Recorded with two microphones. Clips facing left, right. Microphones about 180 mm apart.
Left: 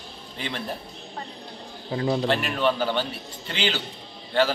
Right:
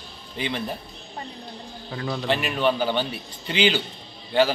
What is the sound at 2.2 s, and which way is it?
A man's voice, 5° right (ahead or behind).